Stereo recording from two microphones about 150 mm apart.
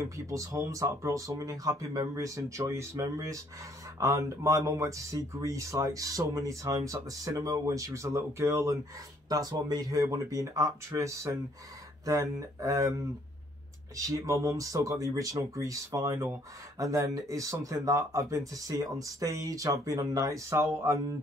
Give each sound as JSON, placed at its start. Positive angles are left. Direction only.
{"t": 0.3, "sound": "speech", "side_deg": -20}
{"t": 13.9, "sound": "speech", "side_deg": -20}